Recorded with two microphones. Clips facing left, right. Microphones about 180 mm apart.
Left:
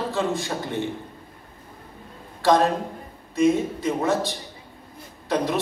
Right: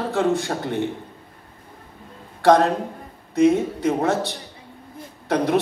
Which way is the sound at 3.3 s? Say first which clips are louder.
Right 3 dB; 65° right (ahead or behind).